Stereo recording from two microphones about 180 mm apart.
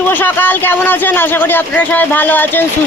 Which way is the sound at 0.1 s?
10° left (ahead or behind).